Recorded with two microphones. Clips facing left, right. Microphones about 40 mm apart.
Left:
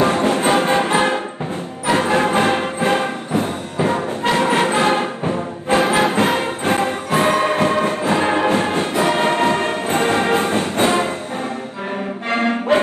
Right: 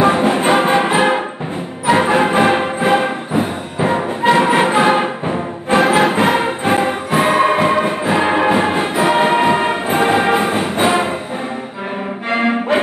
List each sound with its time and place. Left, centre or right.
0.0 s music: centre
5.8 s music: centre
12.3 s music: centre